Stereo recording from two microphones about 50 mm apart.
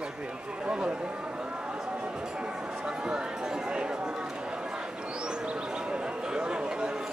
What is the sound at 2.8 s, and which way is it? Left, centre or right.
Speech, centre.